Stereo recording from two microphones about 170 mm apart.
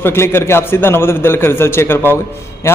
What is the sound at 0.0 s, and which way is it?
A man's voice, 15° left (ahead or behind).